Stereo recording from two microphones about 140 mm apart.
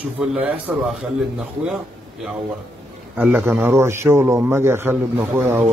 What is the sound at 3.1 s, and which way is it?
A man's voice, 15° right (ahead or behind).